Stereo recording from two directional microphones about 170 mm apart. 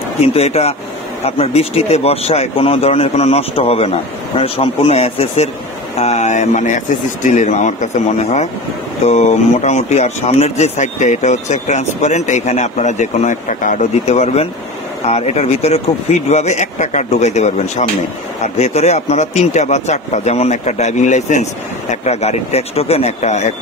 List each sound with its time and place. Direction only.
0.2 s speech: 35° left (ahead or behind)